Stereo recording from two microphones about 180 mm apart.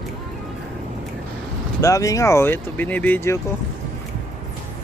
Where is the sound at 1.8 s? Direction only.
15° left (ahead or behind).